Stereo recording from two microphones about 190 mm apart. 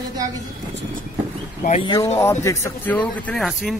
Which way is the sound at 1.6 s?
30° left (ahead or behind).